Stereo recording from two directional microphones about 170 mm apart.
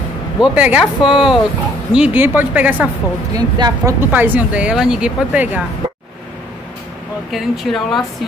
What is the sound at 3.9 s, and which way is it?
Speech, 10° right (ahead or behind).